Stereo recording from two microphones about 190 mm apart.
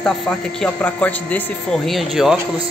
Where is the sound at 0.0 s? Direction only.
5° left (ahead or behind).